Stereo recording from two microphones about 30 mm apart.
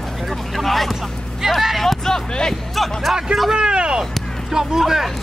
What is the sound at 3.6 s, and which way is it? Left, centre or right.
Speech, right.